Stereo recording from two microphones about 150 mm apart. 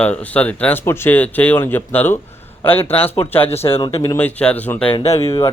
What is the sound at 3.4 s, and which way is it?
Speech, 40° left (ahead or behind).